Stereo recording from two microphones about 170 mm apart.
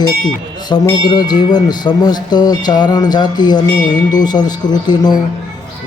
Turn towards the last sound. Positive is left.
turn(degrees=25)  # may be behind; listen again after turning